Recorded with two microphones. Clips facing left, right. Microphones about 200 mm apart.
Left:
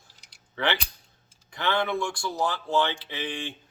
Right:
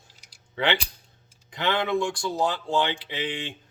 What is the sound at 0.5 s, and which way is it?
Speech, 15° right (ahead or behind).